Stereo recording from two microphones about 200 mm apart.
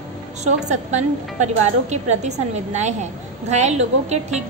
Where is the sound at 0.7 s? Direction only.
35° right (ahead or behind).